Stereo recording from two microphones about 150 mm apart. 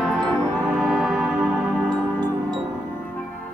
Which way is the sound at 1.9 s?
30° right (ahead or behind).